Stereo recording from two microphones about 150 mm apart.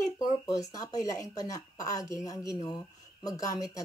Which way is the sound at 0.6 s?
25° left (ahead or behind).